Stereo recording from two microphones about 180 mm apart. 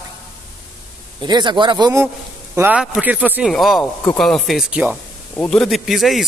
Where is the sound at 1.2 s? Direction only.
25° right (ahead or behind).